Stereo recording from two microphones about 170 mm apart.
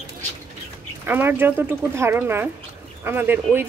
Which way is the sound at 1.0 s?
10° right (ahead or behind).